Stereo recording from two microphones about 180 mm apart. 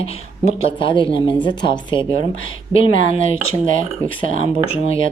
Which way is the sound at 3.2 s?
90° left.